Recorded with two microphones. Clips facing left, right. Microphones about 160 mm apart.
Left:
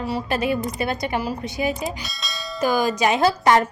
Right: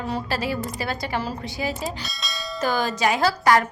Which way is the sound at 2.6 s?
15° left (ahead or behind).